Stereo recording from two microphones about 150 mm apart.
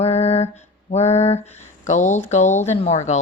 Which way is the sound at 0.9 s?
45° left (ahead or behind).